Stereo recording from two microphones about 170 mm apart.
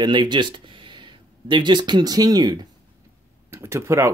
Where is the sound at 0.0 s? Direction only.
25° right (ahead or behind).